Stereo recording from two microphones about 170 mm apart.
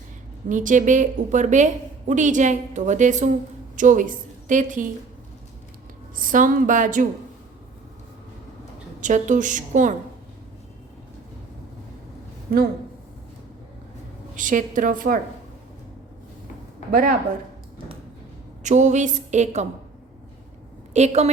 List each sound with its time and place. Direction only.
0.4 s a woman's voice: 50° right (ahead or behind)
6.1 s a woman's voice: 50° right (ahead or behind)
9.0 s a woman's voice: 45° right (ahead or behind)
12.5 s speech: 60° right (ahead or behind)
14.3 s a woman's voice: 50° right (ahead or behind)
16.9 s speech: 60° right (ahead or behind)
18.6 s a woman's voice: 45° right (ahead or behind)
20.9 s a woman's voice: 40° right (ahead or behind)